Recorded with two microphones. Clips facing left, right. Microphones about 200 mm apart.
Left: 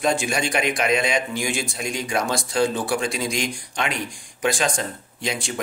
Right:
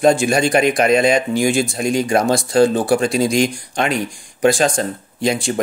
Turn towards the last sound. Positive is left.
turn(degrees=-45)  # may be behind; listen again after turning